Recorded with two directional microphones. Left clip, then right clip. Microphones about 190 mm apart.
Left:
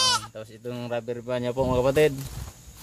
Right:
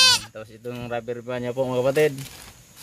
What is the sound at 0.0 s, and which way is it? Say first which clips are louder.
Speech: right 6 dB; 15° right (ahead or behind).